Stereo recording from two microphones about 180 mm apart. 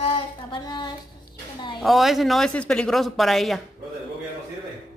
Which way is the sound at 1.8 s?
Centre (ahead or behind).